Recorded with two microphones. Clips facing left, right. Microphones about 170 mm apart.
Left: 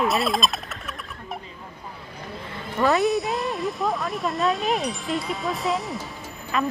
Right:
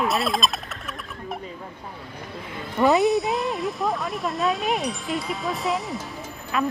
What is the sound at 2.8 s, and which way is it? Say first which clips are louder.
Speech: right 2 dB; 20° right (ahead or behind).